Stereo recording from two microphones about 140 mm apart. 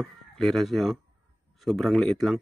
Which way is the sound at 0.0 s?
5° left (ahead or behind).